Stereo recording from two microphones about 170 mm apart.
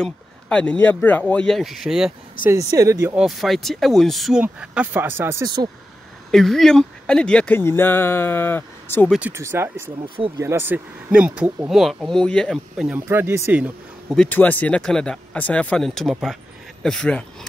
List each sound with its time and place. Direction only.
0.0 s speech: 5° left (ahead or behind)
2.4 s speech: 20° right (ahead or behind)
3.2 s speech: centre (ahead or behind); by 5.7 s 25° right (ahead or behind)
6.3 s speech: centre (ahead or behind)
9.3 s speech: 15° right (ahead or behind); by 12.8 s 5° left (ahead or behind)
12.8 s speech: 10° right (ahead or behind)
14.1 s speech: 5° left (ahead or behind)